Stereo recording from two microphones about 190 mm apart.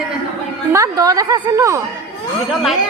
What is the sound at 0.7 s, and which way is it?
A woman's voice, 15° right (ahead or behind).